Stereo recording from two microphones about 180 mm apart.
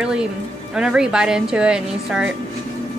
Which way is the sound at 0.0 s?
5° right (ahead or behind).